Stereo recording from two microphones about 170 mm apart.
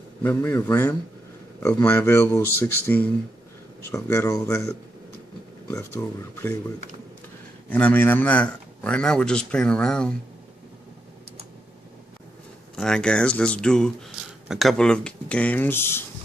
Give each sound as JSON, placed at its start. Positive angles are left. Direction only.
{"t": 0.2, "sound": "speech", "side_deg": 10}
{"t": 7.7, "sound": "a man's voice", "side_deg": 10}
{"t": 12.7, "sound": "a man's voice", "side_deg": 5}